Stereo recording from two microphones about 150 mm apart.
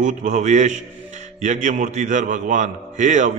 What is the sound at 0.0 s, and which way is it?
A man's voice, 55° right (ahead or behind).